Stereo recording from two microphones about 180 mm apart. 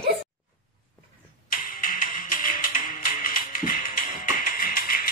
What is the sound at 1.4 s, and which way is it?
Music, 50° left (ahead or behind).